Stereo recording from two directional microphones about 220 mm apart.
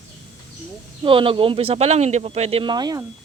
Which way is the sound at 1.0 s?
25° right (ahead or behind).